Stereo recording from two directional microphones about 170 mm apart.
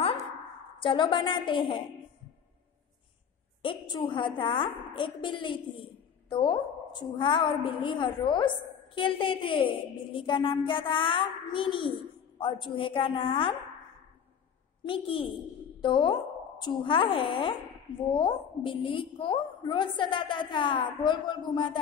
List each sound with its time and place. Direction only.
0.7 s a woman's voice: 30° left (ahead or behind)
3.6 s a woman's voice: 30° left (ahead or behind)
14.9 s a woman's voice: 30° left (ahead or behind)